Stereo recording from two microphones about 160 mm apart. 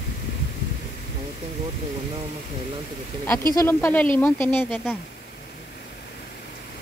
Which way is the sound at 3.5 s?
15° left (ahead or behind).